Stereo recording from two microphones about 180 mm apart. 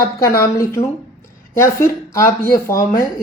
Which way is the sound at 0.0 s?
15° left (ahead or behind).